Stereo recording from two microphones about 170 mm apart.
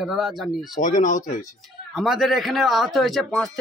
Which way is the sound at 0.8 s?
50° left (ahead or behind).